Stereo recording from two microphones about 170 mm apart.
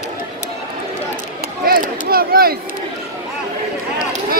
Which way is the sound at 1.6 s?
60° right (ahead or behind).